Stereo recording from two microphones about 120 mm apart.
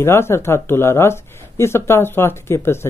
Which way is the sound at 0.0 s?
20° left (ahead or behind).